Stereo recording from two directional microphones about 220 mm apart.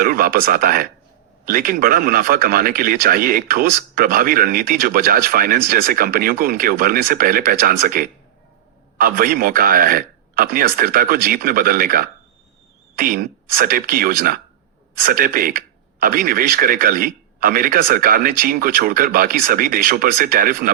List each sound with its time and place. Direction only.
0.0 s speech: 40° right (ahead or behind)